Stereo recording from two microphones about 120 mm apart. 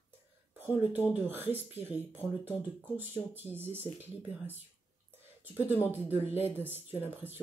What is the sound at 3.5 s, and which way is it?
Speech, 15° right (ahead or behind).